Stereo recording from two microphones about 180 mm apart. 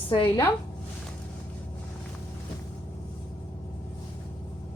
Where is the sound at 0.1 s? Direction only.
30° left (ahead or behind).